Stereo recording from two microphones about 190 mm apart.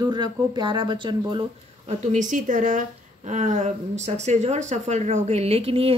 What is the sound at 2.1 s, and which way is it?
Speech, 40° right (ahead or behind).